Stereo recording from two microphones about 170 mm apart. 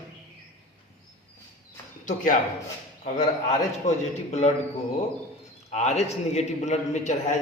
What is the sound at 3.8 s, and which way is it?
Speech, 45° left (ahead or behind).